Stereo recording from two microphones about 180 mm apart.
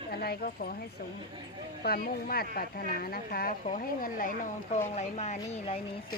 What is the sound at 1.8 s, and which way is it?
Speech, 55° left (ahead or behind).